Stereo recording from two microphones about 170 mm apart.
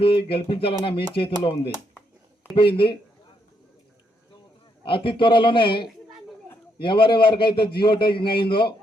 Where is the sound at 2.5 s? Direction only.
30° left (ahead or behind).